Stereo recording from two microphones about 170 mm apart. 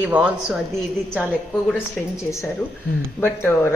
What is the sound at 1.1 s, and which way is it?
Speech, 5° left (ahead or behind).